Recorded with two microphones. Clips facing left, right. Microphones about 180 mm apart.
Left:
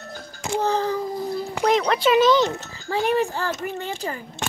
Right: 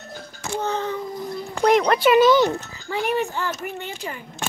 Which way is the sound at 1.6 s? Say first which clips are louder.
Right 3 dB; 5° right (ahead or behind).